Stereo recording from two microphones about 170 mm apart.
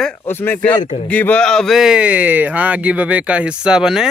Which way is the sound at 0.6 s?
50° left (ahead or behind).